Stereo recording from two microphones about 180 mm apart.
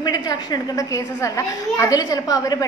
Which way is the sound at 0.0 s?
20° left (ahead or behind).